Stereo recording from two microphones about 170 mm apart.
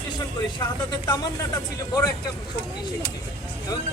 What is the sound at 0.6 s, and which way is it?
Speech, 25° left (ahead or behind).